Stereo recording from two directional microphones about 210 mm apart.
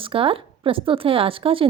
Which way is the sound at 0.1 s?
25° right (ahead or behind).